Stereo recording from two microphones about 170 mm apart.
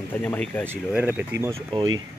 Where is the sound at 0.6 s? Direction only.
10° right (ahead or behind).